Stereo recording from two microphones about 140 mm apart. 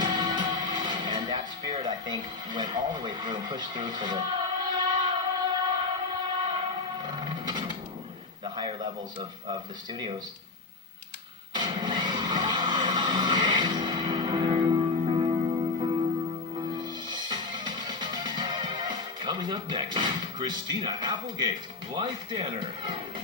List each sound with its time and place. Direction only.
0.0 s music: 30° right (ahead or behind)
6.4 s train: 35° right (ahead or behind)
8.5 s speech: 35° right (ahead or behind)
11.5 s music: 30° right (ahead or behind)
21.9 s speech: 35° right (ahead or behind)